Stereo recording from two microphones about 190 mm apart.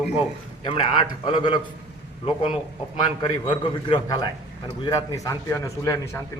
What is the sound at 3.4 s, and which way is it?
A man's voice, 25° left (ahead or behind).